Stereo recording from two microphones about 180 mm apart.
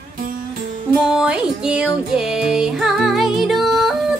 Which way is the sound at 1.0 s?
5° right (ahead or behind).